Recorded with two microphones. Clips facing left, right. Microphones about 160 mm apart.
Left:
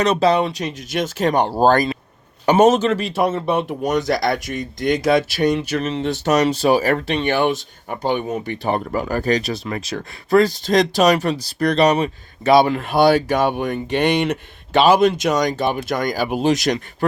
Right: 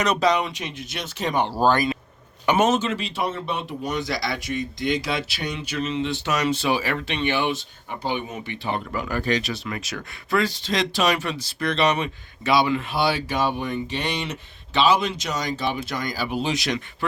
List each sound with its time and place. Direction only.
0.0 s speech: 30° left (ahead or behind)